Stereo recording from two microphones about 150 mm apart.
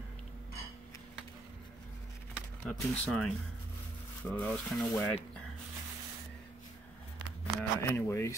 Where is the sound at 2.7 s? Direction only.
5° left (ahead or behind).